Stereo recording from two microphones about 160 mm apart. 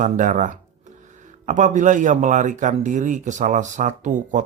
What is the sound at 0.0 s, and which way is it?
Speech, 50° right (ahead or behind).